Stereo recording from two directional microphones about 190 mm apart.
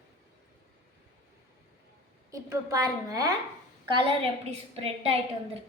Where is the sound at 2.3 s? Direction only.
15° right (ahead or behind).